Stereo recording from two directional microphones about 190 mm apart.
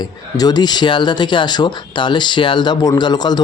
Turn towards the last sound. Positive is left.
turn(degrees=20)  # may be behind; listen again after turning